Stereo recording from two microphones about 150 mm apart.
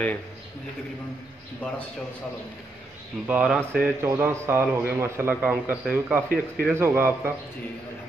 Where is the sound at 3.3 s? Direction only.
10° right (ahead or behind).